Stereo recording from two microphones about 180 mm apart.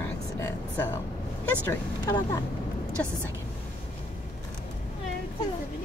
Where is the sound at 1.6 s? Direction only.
15° left (ahead or behind).